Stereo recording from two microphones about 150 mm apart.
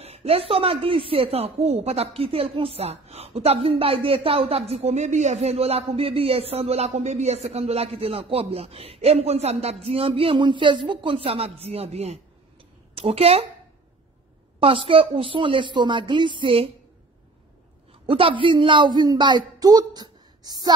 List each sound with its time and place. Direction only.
0.0 s speech: 40° right (ahead or behind)
14.6 s speech: 35° right (ahead or behind)
18.0 s speech: 35° right (ahead or behind)